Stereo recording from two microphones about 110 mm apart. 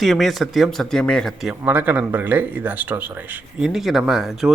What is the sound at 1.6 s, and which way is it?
Speech, 15° right (ahead or behind).